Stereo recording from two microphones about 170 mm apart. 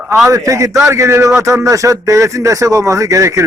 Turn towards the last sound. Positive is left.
turn(degrees=-20)  # may be behind; listen again after turning